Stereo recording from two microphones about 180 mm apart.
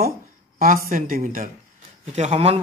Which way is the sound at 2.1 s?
40° right (ahead or behind).